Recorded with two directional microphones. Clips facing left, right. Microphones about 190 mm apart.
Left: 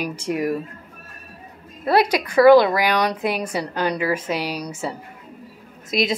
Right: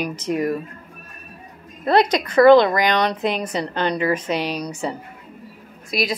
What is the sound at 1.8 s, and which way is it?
A woman's voice, 5° left (ahead or behind).